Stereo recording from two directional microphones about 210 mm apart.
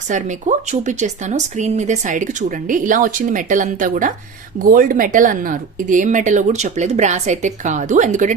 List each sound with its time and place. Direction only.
0.1 s speech: 35° right (ahead or behind)